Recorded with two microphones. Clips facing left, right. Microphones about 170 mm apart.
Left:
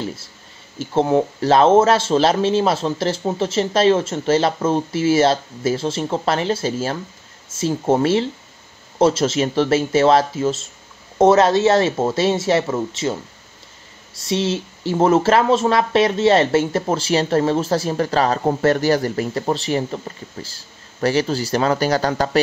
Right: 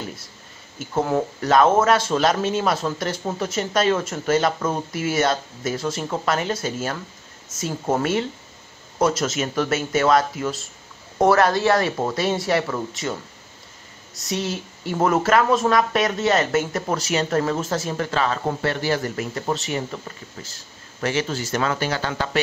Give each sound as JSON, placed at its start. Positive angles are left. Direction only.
{"t": 0.7, "sound": "speech", "side_deg": 25}